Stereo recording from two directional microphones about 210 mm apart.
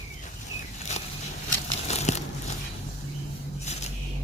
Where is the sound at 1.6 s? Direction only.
30° left (ahead or behind).